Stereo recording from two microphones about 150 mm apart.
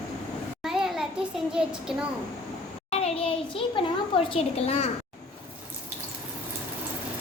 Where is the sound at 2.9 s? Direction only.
40° left (ahead or behind).